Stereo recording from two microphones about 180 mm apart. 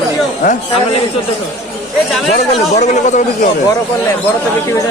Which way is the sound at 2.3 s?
40° left (ahead or behind).